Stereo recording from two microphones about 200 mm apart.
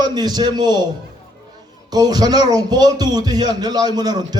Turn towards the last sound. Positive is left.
turn(degrees=-20)  # may be behind; listen again after turning